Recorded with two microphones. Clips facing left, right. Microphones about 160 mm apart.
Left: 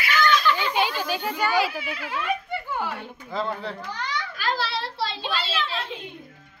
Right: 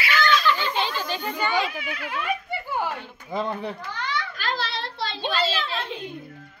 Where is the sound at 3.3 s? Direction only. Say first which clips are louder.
Right 1 dB; 15° right (ahead or behind).